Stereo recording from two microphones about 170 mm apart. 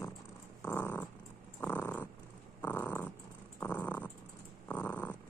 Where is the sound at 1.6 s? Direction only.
10° left (ahead or behind).